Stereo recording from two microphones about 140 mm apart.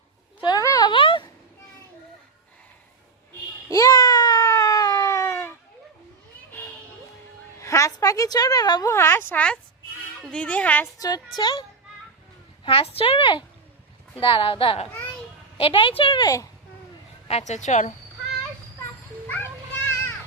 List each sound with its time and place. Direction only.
0.4 s a sound: 25° left (ahead or behind)
3.7 s a sound: 25° left (ahead or behind)
8.9 s a woman's voice: 15° left (ahead or behind)
10.9 s a woman's voice: 25° left (ahead or behind)
12.6 s a woman's voice: 40° left (ahead or behind); by 16.5 s 25° left (ahead or behind)
17.2 s a woman's voice: 50° left (ahead or behind)